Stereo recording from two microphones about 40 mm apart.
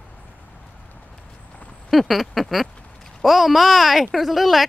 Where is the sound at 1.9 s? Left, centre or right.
Centre.